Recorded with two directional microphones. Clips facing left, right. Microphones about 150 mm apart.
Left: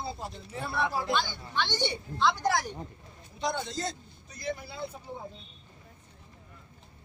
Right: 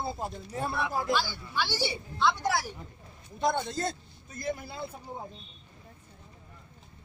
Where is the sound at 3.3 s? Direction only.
50° right (ahead or behind).